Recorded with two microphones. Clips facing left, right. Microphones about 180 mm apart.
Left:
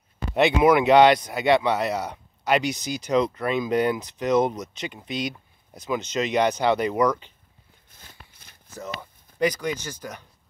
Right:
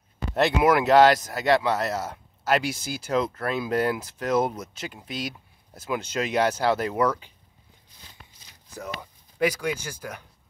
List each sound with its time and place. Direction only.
0.3 s speech: centre (ahead or behind)
8.1 s a sound: 55° left (ahead or behind)
9.4 s speech: 5° right (ahead or behind)